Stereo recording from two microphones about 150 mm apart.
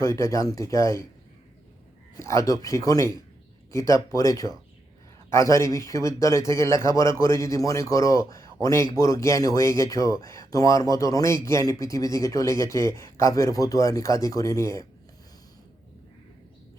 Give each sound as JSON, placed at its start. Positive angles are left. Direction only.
{"t": 0.0, "sound": "speech", "side_deg": 20}
{"t": 2.1, "sound": "speech", "side_deg": 20}